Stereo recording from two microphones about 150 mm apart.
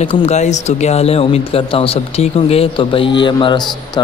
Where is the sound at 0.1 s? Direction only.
50° left (ahead or behind).